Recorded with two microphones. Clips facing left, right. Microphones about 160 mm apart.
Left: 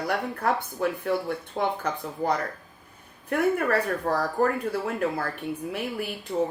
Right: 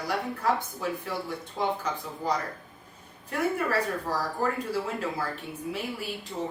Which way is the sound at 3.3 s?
60° left (ahead or behind).